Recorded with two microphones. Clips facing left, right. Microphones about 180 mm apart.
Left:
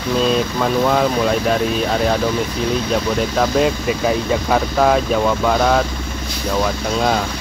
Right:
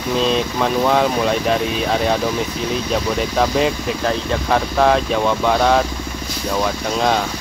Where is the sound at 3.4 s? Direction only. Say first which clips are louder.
Even; centre (ahead or behind).